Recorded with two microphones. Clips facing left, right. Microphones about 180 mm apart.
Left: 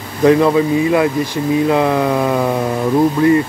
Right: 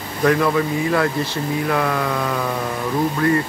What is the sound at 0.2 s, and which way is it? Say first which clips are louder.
Speech: left 6 dB; 20° left (ahead or behind).